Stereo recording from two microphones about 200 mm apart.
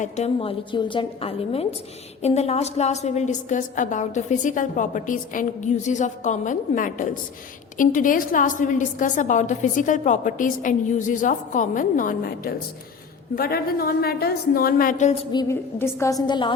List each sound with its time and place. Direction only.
0.0 s a woman's voice: 30° left (ahead or behind)
15.3 s a woman's voice: 15° left (ahead or behind)